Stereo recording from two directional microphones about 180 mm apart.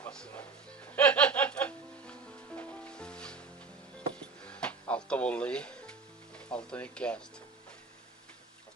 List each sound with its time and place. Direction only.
0.0 s music: 5° left (ahead or behind)